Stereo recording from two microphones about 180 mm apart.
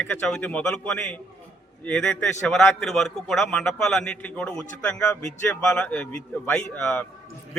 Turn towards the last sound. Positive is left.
turn(degrees=10)  # may be behind; listen again after turning